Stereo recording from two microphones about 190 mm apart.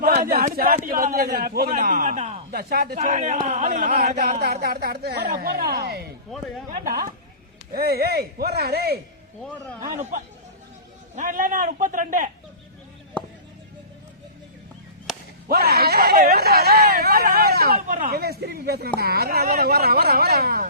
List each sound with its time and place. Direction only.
0.0 s a man's voice: 45° right (ahead or behind)
2.5 s a man's voice: 50° right (ahead or behind)
3.0 s a man's voice: 40° right (ahead or behind)
4.6 s a man's voice: 55° right (ahead or behind)
10.0 s a man's voice: 45° right (ahead or behind)
15.4 s speech: 55° right (ahead or behind)